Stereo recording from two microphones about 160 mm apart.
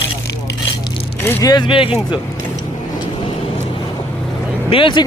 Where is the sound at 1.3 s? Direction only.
20° left (ahead or behind).